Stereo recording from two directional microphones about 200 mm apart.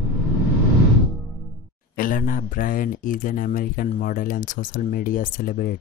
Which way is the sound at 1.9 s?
45° left (ahead or behind).